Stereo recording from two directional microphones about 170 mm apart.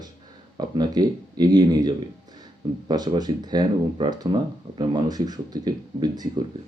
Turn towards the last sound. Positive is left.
turn(degrees=-25)  # may be behind; listen again after turning